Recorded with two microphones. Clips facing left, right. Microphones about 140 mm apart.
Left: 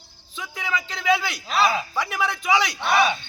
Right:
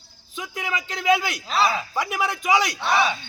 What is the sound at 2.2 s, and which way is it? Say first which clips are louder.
Speech: right 1 dB; 45° right (ahead or behind).